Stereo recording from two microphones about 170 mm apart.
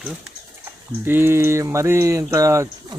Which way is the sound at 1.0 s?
15° right (ahead or behind).